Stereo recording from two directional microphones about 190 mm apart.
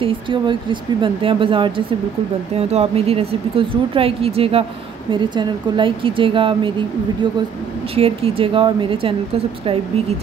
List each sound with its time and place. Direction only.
0.0 s speech: 25° right (ahead or behind)
7.9 s speech: 30° right (ahead or behind)